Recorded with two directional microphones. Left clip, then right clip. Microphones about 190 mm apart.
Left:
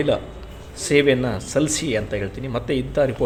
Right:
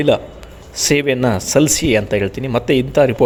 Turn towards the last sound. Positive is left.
turn(degrees=-50)  # may be behind; listen again after turning